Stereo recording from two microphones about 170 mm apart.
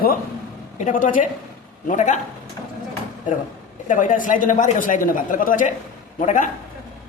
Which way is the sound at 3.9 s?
50° left (ahead or behind).